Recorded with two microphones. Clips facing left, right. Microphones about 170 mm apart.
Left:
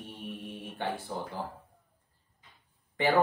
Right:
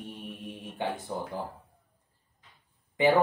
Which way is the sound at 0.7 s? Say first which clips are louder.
Right 2 dB; 20° right (ahead or behind).